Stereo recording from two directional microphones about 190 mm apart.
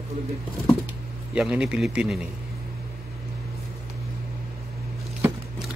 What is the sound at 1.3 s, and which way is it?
Speech, 5° right (ahead or behind).